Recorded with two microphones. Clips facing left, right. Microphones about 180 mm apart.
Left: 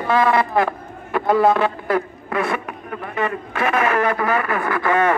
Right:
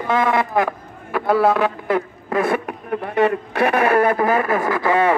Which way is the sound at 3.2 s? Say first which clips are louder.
Right 5 dB; 65° right (ahead or behind).